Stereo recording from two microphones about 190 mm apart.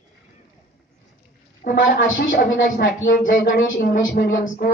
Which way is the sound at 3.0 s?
45° left (ahead or behind).